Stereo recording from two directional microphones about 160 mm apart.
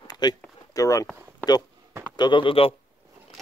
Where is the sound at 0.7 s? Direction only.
20° left (ahead or behind).